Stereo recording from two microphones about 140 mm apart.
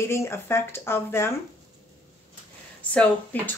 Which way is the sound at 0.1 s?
20° left (ahead or behind).